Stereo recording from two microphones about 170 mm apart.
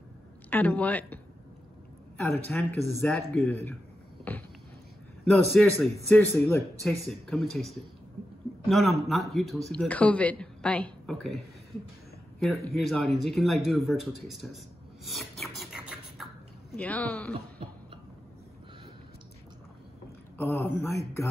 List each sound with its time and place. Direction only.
0.5 s a woman's voice: 10° left (ahead or behind)
2.2 s speech: centre (ahead or behind)
3.0 s a man's voice: 15° left (ahead or behind)
4.2 s a sound: 10° left (ahead or behind)
5.2 s a man's voice: 5° left (ahead or behind)
6.8 s speech: centre (ahead or behind)
15.0 s scratch: centre (ahead or behind)
16.7 s a man's voice: 10° left (ahead or behind)
20.3 s a man's voice: 15° left (ahead or behind)